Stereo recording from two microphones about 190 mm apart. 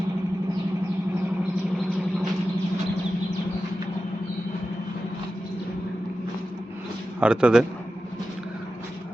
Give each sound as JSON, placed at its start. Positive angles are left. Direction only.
{"t": 7.2, "sound": "speech", "side_deg": -5}